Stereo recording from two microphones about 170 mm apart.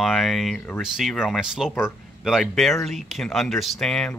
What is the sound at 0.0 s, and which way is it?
Speech, centre (ahead or behind).